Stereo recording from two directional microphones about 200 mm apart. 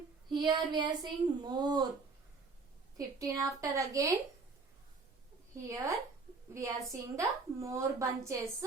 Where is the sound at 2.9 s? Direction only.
15° right (ahead or behind).